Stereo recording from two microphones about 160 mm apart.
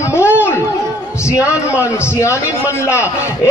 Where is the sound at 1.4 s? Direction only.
20° left (ahead or behind).